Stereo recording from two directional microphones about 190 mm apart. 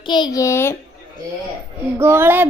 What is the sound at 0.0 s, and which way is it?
Speech, 25° left (ahead or behind).